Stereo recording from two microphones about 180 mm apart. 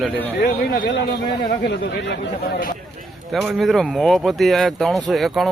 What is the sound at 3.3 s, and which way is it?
Speech, centre (ahead or behind).